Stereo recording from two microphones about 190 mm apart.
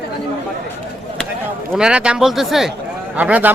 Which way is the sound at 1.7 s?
5° right (ahead or behind).